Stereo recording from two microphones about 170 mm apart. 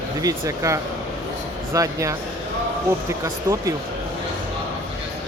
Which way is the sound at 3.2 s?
20° right (ahead or behind).